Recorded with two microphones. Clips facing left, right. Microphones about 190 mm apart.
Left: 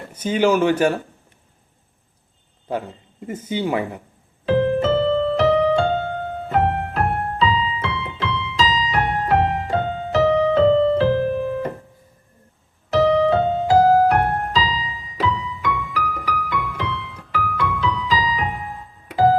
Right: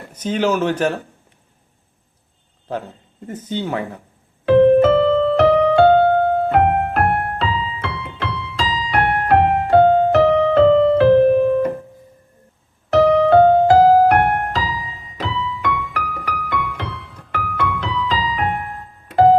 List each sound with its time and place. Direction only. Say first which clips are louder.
0.1 s speech: left 1 dB; 10° left (ahead or behind)
3.2 s speech: left 1 dB; 10° left (ahead or behind)
4.4 s music: right 7 dB; 60° right (ahead or behind)
12.9 s music: right 4 dB; 55° right (ahead or behind)